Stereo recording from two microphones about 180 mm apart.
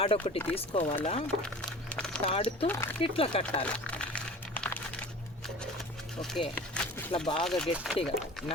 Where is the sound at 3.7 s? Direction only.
5° left (ahead or behind).